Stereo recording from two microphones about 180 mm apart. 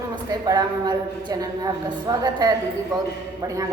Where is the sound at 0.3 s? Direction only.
20° right (ahead or behind).